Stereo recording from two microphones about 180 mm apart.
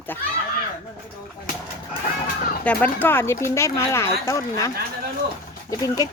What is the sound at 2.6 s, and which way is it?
Speech, 10° left (ahead or behind).